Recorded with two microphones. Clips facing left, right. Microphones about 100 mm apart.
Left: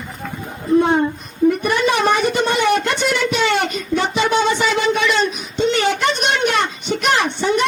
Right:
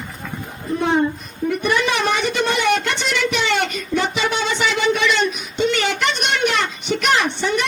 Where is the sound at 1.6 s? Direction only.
35° left (ahead or behind).